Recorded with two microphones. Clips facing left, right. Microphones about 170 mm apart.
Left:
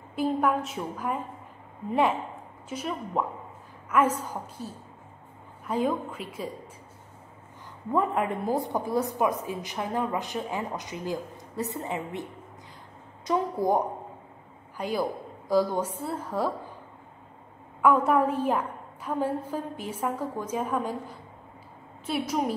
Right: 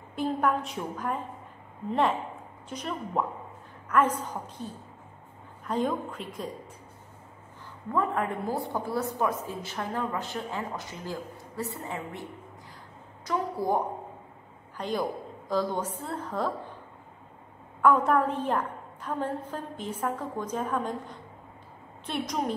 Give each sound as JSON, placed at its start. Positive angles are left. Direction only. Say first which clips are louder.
{"t": 0.1, "sound": "a woman's voice", "louder": "left 2 dB", "side_deg": 5}
{"t": 7.9, "sound": "a woman's voice", "louder": "left 2 dB", "side_deg": 20}
{"t": 17.8, "sound": "a woman's voice", "louder": "left 1 dB", "side_deg": 5}